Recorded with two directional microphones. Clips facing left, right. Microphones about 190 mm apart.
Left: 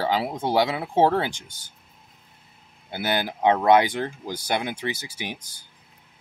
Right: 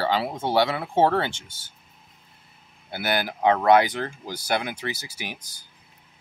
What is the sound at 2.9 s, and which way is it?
Speech, 20° left (ahead or behind).